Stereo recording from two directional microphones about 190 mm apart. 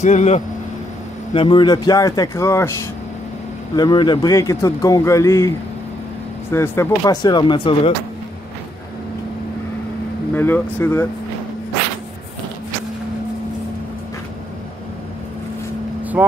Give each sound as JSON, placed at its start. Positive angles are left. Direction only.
{"t": 0.0, "sound": "speech", "side_deg": 40}
{"t": 1.3, "sound": "speech", "side_deg": 30}
{"t": 3.7, "sound": "speech", "side_deg": 20}
{"t": 6.5, "sound": "speech", "side_deg": 15}
{"t": 10.3, "sound": "speech", "side_deg": 10}
{"t": 16.2, "sound": "speech", "side_deg": -10}